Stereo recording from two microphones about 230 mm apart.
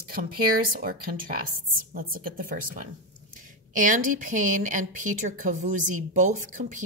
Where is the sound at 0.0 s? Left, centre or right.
Right.